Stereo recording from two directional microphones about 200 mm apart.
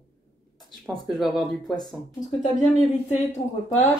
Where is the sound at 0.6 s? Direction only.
Centre (ahead or behind).